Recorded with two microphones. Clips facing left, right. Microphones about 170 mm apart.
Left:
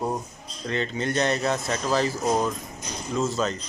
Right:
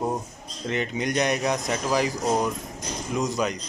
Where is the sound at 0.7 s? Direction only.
15° right (ahead or behind).